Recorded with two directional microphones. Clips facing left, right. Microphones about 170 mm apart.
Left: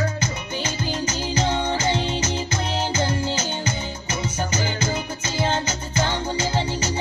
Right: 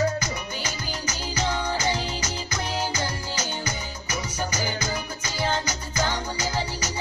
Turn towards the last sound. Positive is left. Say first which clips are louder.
# left 4 dB
turn(degrees=30)  # may be behind; listen again after turning